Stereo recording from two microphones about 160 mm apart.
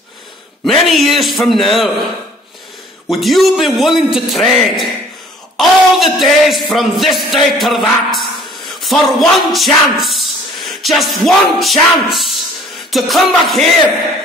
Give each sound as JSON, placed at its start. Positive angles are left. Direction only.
{"t": 0.7, "sound": "music", "side_deg": 0}
{"t": 3.1, "sound": "music", "side_deg": 0}
{"t": 8.8, "sound": "speech", "side_deg": 0}
{"t": 12.9, "sound": "music", "side_deg": 0}